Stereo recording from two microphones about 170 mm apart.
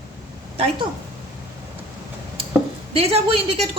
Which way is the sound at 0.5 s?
35° right (ahead or behind).